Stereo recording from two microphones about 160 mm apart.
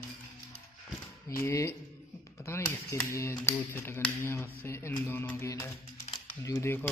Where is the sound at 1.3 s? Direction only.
20° left (ahead or behind).